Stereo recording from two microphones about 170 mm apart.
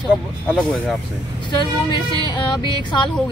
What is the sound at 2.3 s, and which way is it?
Speech, 25° left (ahead or behind).